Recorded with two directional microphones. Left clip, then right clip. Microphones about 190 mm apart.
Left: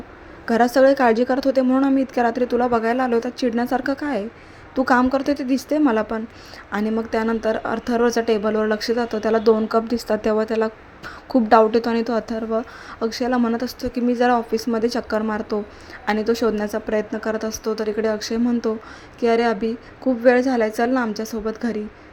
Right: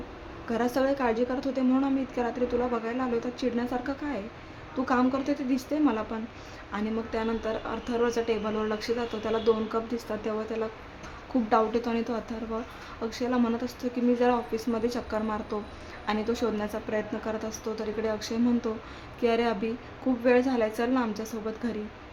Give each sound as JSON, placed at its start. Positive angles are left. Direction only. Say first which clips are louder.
{"t": 0.4, "sound": "a woman's voice", "louder": "left 12 dB", "side_deg": 35}